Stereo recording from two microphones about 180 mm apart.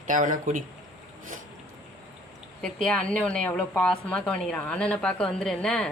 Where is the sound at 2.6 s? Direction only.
5° left (ahead or behind).